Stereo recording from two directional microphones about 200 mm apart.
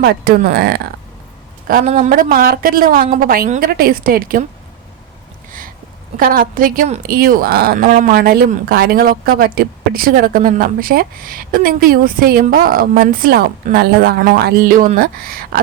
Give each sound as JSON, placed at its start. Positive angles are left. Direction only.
{"t": 0.0, "sound": "a woman's voice", "side_deg": -50}
{"t": 6.1, "sound": "speech", "side_deg": -45}